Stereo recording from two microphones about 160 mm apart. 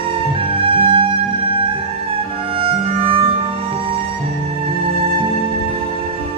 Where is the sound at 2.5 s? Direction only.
35° right (ahead or behind).